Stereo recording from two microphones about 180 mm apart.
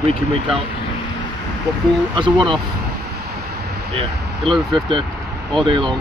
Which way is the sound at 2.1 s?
25° right (ahead or behind).